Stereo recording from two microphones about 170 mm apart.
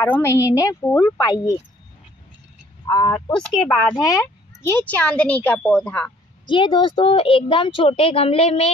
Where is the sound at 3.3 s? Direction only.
5° left (ahead or behind).